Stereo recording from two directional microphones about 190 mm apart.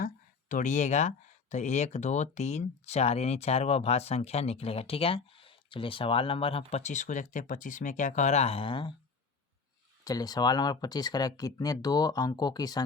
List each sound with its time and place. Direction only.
0.0 s speech: 45° left (ahead or behind); by 8.9 s 25° left (ahead or behind)
10.0 s speech: 20° left (ahead or behind)